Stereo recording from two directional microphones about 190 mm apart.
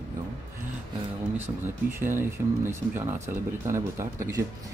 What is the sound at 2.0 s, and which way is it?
Speech, 10° right (ahead or behind).